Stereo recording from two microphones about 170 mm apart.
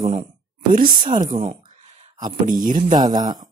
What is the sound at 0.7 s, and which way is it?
Speech, 55° right (ahead or behind).